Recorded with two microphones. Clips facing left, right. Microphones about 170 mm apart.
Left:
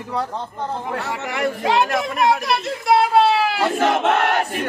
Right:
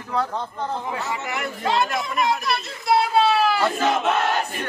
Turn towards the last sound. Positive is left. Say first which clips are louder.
# left 3 dB
turn(degrees=70)  # may be behind; listen again after turning